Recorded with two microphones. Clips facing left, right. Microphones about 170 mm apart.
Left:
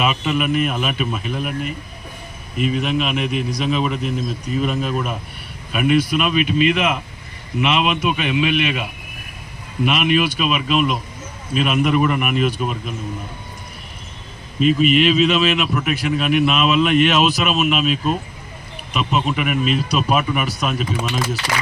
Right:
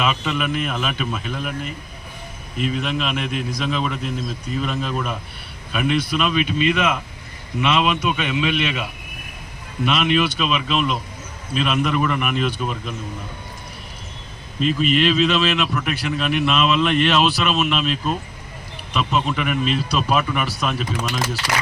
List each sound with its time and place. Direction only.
0.0 s a man's voice: 10° left (ahead or behind)
2.6 s a man's voice: 10° left (ahead or behind)
14.6 s a man's voice: 10° left (ahead or behind)
17.4 s a man's voice: 5° left (ahead or behind)